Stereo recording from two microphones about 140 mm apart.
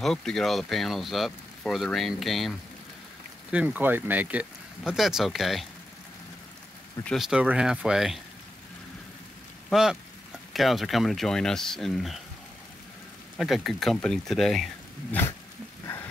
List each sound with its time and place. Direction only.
0.0 s speech: 5° left (ahead or behind)
3.5 s speech: 10° right (ahead or behind)
7.2 s speech: 5° right (ahead or behind)
9.7 s speech: 5° right (ahead or behind)
13.4 s speech: centre (ahead or behind)
15.0 s dog: 15° left (ahead or behind)